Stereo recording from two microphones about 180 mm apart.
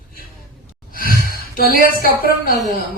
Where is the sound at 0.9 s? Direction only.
55° left (ahead or behind).